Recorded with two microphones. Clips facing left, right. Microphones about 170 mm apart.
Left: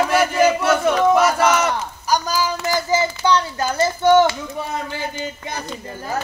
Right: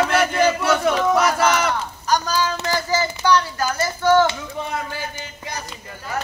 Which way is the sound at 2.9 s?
20° left (ahead or behind).